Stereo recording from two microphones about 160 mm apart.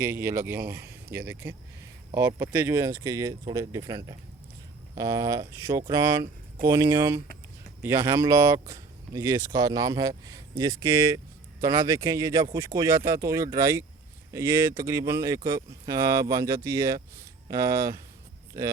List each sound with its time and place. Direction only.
0.0 s speech: 15° right (ahead or behind)